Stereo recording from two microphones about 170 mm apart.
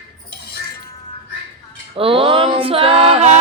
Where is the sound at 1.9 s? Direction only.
35° right (ahead or behind).